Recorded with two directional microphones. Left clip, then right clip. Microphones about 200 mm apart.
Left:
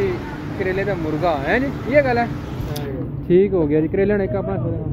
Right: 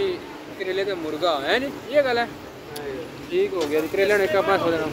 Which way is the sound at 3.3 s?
20° left (ahead or behind).